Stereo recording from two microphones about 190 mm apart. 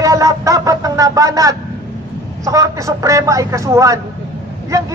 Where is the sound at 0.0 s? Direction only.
15° right (ahead or behind).